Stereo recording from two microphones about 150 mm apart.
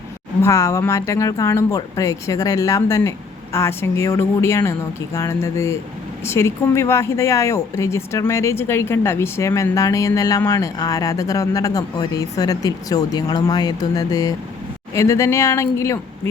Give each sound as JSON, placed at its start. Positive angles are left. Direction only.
{"t": 0.4, "sound": "a woman's voice", "side_deg": 20}